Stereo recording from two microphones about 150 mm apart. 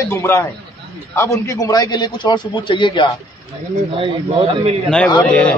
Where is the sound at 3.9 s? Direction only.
40° right (ahead or behind).